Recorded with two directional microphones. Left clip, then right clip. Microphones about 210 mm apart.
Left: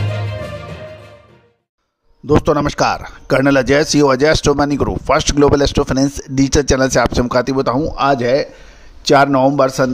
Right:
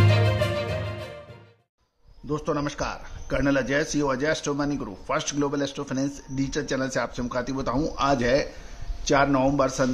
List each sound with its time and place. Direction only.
2.2 s a man's voice: 40° left (ahead or behind)